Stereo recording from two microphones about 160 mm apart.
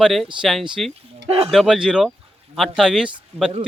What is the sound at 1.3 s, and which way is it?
Speech, 35° right (ahead or behind).